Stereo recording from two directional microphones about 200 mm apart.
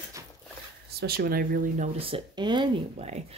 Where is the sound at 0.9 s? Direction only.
50° right (ahead or behind).